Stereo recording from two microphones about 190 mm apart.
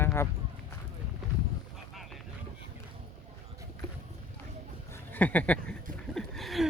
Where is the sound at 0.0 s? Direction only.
15° left (ahead or behind).